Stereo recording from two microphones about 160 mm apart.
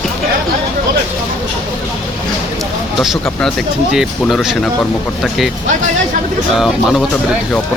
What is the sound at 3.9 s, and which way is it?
Speech, centre (ahead or behind).